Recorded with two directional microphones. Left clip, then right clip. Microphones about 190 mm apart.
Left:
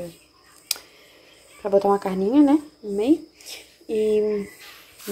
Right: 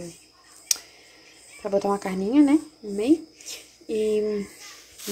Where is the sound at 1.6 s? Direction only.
Centre (ahead or behind).